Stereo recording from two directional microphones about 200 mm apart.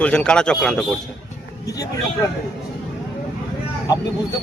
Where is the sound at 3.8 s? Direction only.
20° left (ahead or behind).